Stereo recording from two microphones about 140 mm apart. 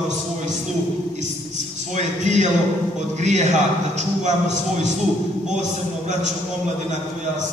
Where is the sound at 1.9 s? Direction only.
55° right (ahead or behind).